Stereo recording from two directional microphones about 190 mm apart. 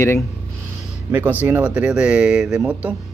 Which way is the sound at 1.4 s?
10° right (ahead or behind).